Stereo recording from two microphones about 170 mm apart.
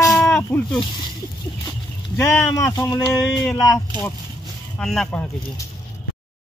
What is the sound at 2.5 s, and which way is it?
Speech, 20° left (ahead or behind).